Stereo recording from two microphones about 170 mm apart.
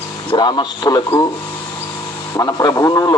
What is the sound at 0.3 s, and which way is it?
A man's voice, 25° left (ahead or behind).